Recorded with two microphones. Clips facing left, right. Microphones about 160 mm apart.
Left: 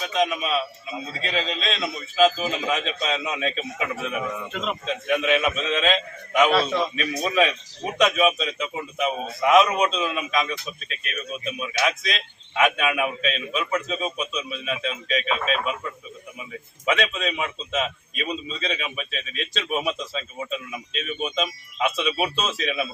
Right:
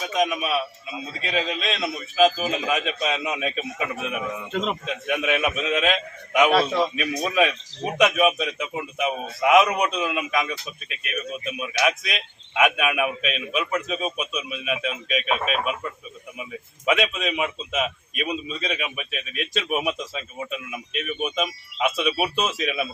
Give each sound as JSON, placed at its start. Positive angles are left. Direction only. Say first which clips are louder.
{"t": 0.0, "sound": "a man's voice", "louder": "even", "side_deg": -5}
{"t": 11.6, "sound": "a man's voice", "louder": "right 2 dB", "side_deg": -10}